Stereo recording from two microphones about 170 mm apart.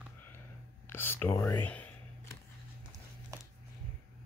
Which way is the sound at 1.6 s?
10° left (ahead or behind).